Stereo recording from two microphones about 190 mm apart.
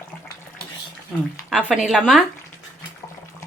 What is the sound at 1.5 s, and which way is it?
Speech, 5° right (ahead or behind).